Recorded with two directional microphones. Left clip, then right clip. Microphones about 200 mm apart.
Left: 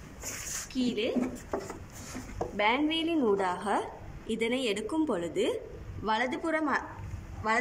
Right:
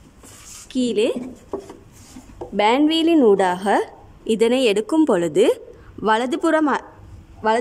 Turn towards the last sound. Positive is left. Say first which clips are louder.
# right 10 dB
turn(degrees=-55)  # may be behind; listen again after turning